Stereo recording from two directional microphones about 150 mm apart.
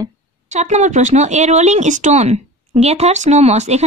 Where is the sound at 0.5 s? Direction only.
50° right (ahead or behind).